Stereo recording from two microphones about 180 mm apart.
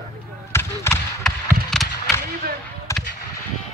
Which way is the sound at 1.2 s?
Centre (ahead or behind).